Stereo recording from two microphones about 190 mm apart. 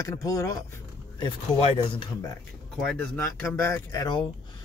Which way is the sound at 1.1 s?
30° left (ahead or behind).